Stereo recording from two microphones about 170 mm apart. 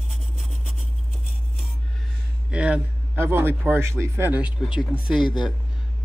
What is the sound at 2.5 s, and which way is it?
A man's voice, 5° right (ahead or behind).